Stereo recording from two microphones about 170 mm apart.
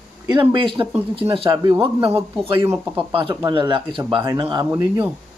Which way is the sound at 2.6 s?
15° right (ahead or behind).